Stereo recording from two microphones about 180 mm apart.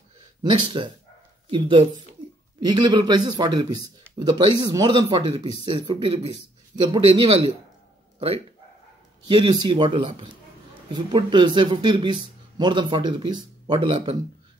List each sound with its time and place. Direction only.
0.4 s speech: 25° right (ahead or behind)
9.3 s speech: 30° right (ahead or behind)